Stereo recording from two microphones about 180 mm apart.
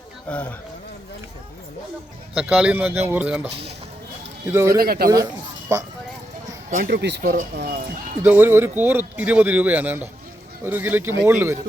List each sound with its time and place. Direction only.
0.3 s speech: 5° left (ahead or behind)
2.3 s speech: 5° right (ahead or behind)
4.8 s speech: 55° right (ahead or behind)
5.0 s a sound: 20° right (ahead or behind)
6.7 s speech: 45° right (ahead or behind)
6.9 s speech: 70° right (ahead or behind)
8.2 s speech: 10° right (ahead or behind)